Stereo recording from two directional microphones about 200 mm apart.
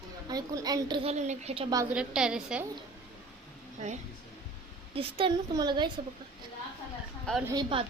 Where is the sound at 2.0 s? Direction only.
5° right (ahead or behind).